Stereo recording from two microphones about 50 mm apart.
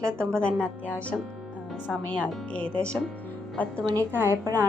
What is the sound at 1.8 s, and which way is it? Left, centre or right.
A woman's voice, left.